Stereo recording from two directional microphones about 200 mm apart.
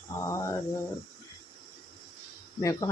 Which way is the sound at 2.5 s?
15° left (ahead or behind).